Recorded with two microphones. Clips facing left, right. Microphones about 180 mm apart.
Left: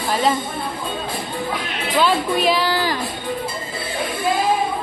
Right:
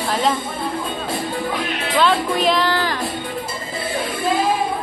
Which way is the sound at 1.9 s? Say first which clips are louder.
Even; 5° left (ahead or behind).